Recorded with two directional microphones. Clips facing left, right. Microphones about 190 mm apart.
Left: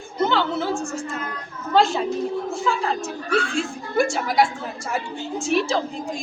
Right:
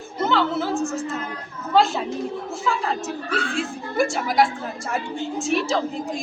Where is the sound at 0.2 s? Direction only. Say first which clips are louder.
Even; centre (ahead or behind).